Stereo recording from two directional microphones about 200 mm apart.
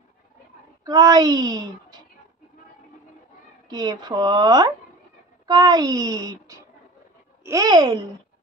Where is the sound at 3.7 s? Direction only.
20° right (ahead or behind).